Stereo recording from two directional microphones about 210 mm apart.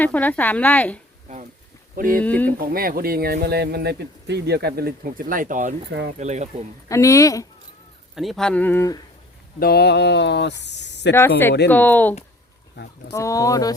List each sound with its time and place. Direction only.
0.0 s speech: 10° left (ahead or behind)
2.0 s speech: 40° right (ahead or behind)
2.2 s speech: 5° left (ahead or behind)
2.5 s speech: 45° right (ahead or behind)
6.1 s speech: 35° right (ahead or behind)
6.8 s speech: 15° left (ahead or behind)
8.1 s speech: centre (ahead or behind)
9.6 s speech: 50° left (ahead or behind)
11.1 s speech: 10° left (ahead or behind)